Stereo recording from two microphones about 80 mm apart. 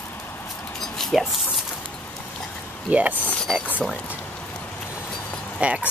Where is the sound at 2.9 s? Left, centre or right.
Centre.